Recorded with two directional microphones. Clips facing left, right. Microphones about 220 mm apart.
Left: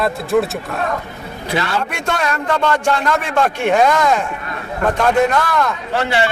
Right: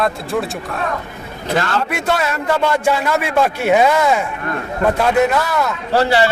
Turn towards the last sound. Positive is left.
turn(degrees=-35)  # may be behind; listen again after turning